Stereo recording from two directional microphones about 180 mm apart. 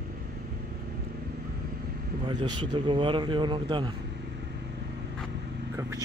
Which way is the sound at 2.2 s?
25° right (ahead or behind).